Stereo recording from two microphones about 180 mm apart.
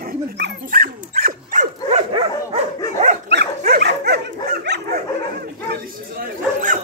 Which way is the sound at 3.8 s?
65° right (ahead or behind).